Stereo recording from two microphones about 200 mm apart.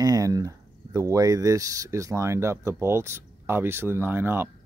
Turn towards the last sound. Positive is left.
turn(degrees=-10)  # may be behind; listen again after turning